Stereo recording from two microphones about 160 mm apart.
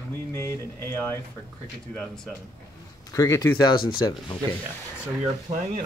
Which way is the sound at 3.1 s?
20° left (ahead or behind).